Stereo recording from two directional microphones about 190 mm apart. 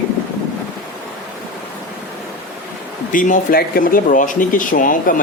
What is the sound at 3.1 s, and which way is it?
Speech, 45° left (ahead or behind).